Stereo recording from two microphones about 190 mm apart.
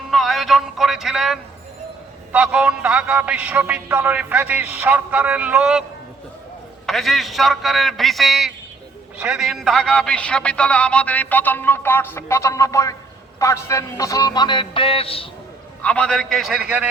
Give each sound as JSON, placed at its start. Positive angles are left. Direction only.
{"t": 0.1, "sound": "a man's voice", "side_deg": 0}
{"t": 6.8, "sound": "a man's voice", "side_deg": 0}
{"t": 13.4, "sound": "music", "side_deg": 15}
{"t": 15.8, "sound": "a man's voice", "side_deg": 5}